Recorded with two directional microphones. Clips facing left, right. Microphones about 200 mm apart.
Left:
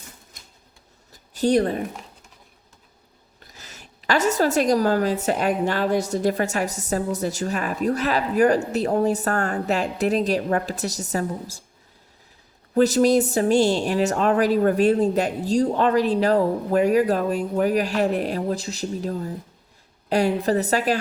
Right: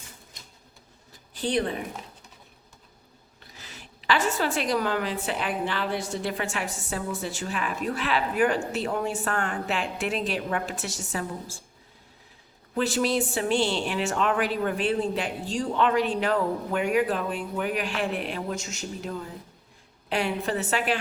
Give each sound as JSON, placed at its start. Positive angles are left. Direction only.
{"t": 1.3, "sound": "speech", "side_deg": 45}
{"t": 3.4, "sound": "a woman's voice", "side_deg": 45}
{"t": 12.7, "sound": "a woman's voice", "side_deg": 40}